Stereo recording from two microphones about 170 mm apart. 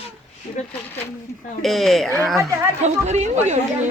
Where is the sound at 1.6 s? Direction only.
Centre (ahead or behind).